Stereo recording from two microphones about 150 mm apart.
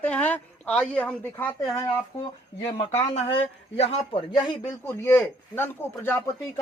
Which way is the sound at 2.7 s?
45° left (ahead or behind).